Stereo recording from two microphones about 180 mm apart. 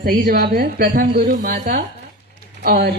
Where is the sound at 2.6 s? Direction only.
60° right (ahead or behind).